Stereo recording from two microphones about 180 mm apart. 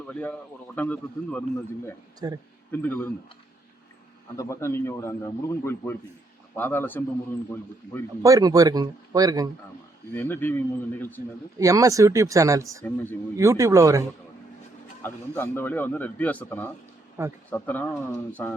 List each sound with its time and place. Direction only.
0.0 s speech: 5° left (ahead or behind)
2.2 s speech: 20° right (ahead or behind)
2.7 s speech: 10° left (ahead or behind)
4.4 s speech: 15° left (ahead or behind)
8.2 s speech: 20° right (ahead or behind)
10.2 s speech: 10° left (ahead or behind)
11.5 s speech: 20° right (ahead or behind)
15.0 s speech: 10° left (ahead or behind)
17.2 s speech: 15° right (ahead or behind)
17.5 s speech: 10° left (ahead or behind)